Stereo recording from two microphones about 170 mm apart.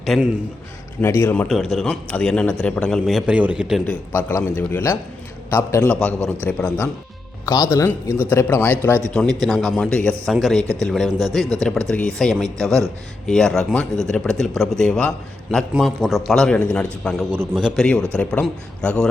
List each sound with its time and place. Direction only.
0.0 s a man's voice: centre (ahead or behind)
1.0 s a man's voice: 15° left (ahead or behind)
9.0 s a man's voice: 5° left (ahead or behind)